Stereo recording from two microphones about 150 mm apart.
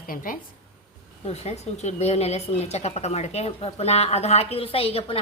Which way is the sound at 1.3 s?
45° left (ahead or behind).